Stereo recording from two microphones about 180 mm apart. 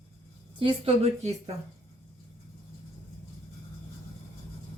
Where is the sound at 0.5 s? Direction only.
30° right (ahead or behind).